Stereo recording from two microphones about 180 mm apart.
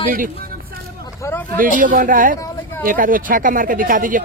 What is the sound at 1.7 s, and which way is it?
Speech, 45° right (ahead or behind).